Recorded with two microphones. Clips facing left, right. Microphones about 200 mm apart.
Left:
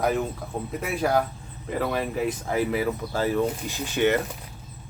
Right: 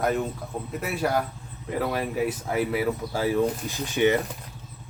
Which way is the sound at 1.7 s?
10° right (ahead or behind).